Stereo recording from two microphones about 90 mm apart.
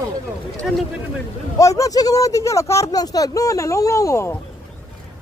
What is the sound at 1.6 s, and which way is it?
Speech, 40° left (ahead or behind).